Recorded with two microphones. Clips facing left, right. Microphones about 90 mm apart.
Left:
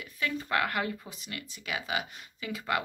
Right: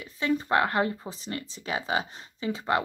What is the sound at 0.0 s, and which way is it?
Speech, 30° right (ahead or behind).